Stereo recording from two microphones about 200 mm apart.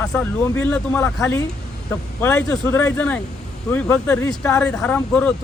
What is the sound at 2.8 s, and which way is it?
Speech, 5° left (ahead or behind).